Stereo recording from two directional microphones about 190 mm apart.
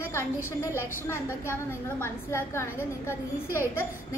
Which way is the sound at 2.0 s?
15° left (ahead or behind).